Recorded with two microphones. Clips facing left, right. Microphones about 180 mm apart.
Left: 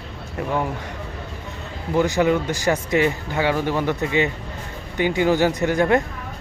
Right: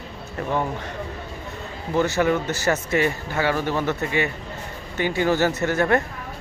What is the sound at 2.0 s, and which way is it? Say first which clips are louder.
Speech: left 2 dB; 15° left (ahead or behind).